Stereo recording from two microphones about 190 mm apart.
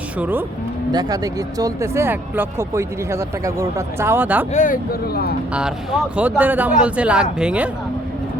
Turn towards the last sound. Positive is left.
turn(degrees=-5)  # may be behind; listen again after turning